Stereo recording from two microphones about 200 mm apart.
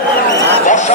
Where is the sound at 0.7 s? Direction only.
35° left (ahead or behind).